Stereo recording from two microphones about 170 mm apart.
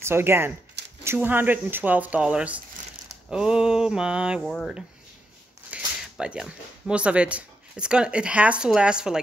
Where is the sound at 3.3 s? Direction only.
5° right (ahead or behind).